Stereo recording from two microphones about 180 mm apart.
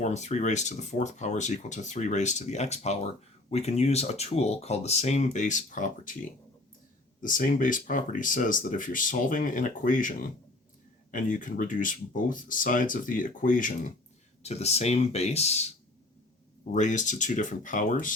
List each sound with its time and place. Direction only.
0.0 s speech: 40° left (ahead or behind)
7.2 s speech: 45° left (ahead or behind)
14.4 s speech: 35° left (ahead or behind)
16.7 s speech: 45° left (ahead or behind)